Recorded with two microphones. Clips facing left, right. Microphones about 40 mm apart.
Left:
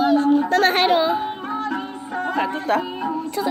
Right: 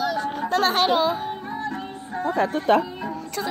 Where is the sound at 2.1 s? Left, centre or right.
Left.